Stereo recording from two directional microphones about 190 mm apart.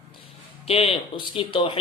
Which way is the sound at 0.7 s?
30° left (ahead or behind).